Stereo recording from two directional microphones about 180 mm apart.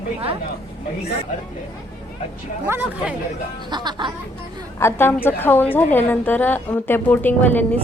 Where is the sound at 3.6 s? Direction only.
25° right (ahead or behind).